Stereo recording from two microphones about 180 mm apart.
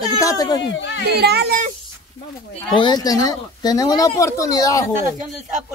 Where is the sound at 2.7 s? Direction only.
25° left (ahead or behind).